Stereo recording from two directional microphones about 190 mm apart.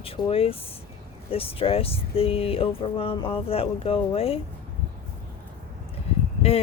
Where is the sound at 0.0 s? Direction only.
30° left (ahead or behind).